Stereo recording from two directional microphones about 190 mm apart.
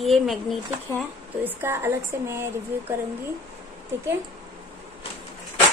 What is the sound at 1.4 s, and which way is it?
A woman's voice, 10° right (ahead or behind).